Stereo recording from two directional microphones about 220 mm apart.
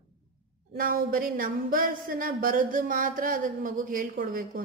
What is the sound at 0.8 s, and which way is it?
A woman's voice, 40° right (ahead or behind).